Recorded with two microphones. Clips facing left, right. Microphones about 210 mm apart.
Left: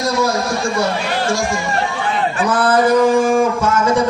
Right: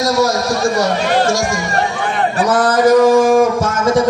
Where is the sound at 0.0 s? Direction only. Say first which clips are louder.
Right 3 dB; 40° right (ahead or behind).